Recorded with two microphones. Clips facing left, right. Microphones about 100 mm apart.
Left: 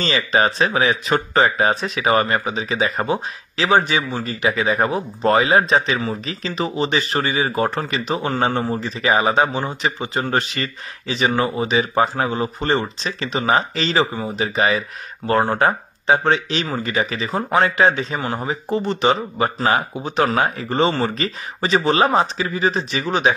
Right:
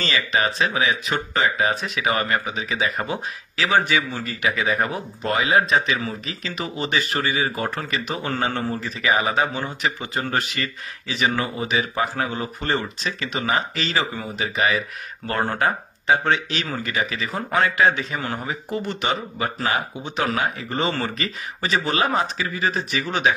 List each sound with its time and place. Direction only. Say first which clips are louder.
0.0 s speech: left 4 dB; 30° left (ahead or behind)